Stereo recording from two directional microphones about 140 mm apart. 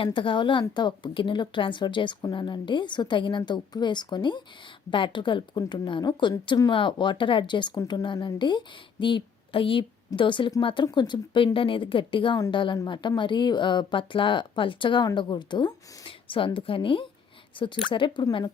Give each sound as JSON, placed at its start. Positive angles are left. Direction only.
{"t": 0.0, "sound": "a woman's voice", "side_deg": 35}